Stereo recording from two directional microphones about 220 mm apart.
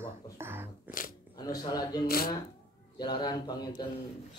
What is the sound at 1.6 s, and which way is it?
Speech, 20° left (ahead or behind).